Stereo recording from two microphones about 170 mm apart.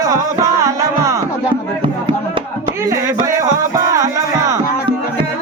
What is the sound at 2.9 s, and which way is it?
Music, 20° right (ahead or behind).